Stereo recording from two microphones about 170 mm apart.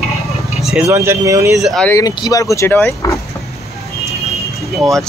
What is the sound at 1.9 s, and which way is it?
Speech, 20° left (ahead or behind).